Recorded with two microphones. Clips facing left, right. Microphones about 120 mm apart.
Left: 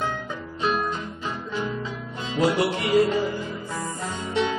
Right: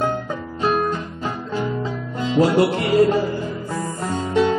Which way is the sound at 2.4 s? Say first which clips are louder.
Right 5 dB; 40° right (ahead or behind).